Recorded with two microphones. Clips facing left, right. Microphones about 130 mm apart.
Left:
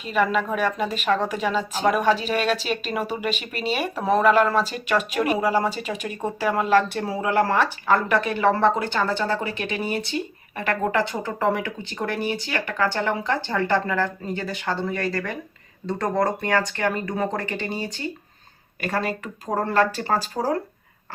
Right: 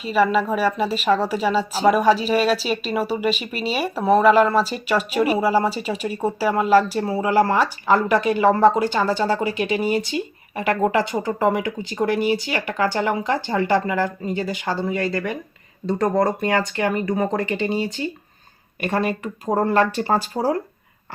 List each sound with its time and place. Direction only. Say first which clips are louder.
0.1 s a woman's voice: right 4 dB; 10° right (ahead or behind)
3.5 s speech: right 1 dB; 45° left (ahead or behind)
3.8 s a woman's voice: right 4 dB; 10° right (ahead or behind)
18.8 s a woman's voice: right 4 dB; 25° right (ahead or behind)